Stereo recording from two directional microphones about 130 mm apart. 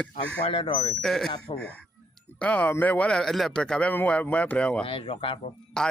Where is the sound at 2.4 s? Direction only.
10° left (ahead or behind).